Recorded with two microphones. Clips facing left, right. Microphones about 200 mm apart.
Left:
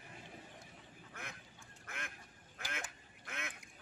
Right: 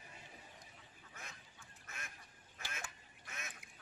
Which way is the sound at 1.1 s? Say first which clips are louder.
Left 5 dB; 55° left (ahead or behind).